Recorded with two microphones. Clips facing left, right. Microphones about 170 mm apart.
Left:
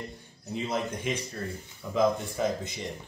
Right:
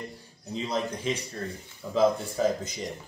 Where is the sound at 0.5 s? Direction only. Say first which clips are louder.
Right 1 dB; 35° right (ahead or behind).